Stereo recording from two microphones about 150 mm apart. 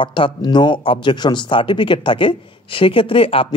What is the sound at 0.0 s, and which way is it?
Speech, 35° left (ahead or behind).